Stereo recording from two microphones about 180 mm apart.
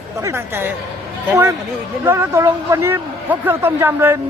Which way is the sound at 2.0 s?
15° right (ahead or behind).